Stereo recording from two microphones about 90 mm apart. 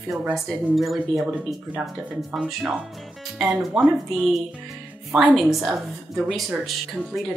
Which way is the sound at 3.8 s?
5° right (ahead or behind).